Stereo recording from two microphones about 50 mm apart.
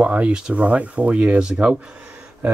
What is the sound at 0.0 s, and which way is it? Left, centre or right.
Speech, right.